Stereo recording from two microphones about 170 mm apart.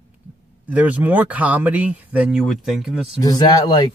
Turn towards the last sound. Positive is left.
turn(degrees=25)  # may be behind; listen again after turning